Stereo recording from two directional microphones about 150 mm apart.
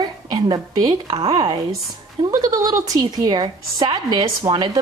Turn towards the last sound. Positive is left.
turn(degrees=-25)  # may be behind; listen again after turning